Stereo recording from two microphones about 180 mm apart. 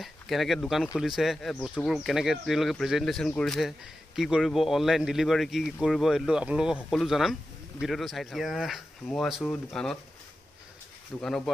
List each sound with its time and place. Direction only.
0.0 s speech: centre (ahead or behind)
11.1 s speech: 5° left (ahead or behind)